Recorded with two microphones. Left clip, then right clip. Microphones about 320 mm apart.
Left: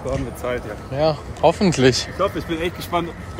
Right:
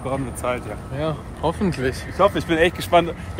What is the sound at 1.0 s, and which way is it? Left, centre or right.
Speech, centre.